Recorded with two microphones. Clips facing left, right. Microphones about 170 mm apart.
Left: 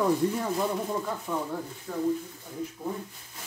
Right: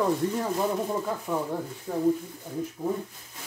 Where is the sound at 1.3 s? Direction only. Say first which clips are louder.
Right 2 dB; 15° right (ahead or behind).